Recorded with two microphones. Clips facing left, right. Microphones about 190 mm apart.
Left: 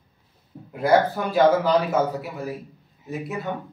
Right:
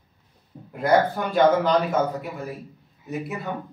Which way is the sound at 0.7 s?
5° left (ahead or behind).